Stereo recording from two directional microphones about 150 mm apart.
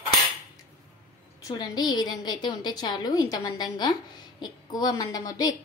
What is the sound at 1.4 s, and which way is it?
A woman's voice, 25° left (ahead or behind).